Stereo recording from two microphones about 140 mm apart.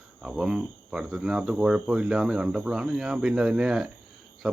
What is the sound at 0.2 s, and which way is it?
Speech, 5° right (ahead or behind).